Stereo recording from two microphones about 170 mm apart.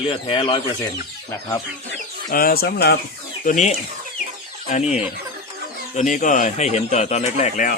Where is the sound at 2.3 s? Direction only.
55° left (ahead or behind).